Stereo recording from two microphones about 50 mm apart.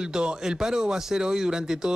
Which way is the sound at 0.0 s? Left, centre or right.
Centre.